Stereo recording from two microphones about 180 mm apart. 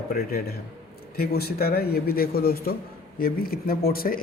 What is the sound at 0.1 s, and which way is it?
Speech, 55° left (ahead or behind).